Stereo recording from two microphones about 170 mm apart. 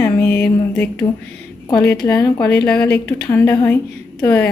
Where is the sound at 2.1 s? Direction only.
20° left (ahead or behind).